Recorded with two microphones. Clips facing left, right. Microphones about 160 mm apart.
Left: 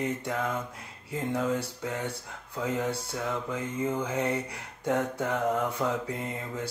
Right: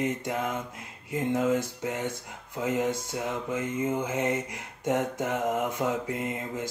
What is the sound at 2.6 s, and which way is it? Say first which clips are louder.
Mantra: right 2 dB; 15° right (ahead or behind).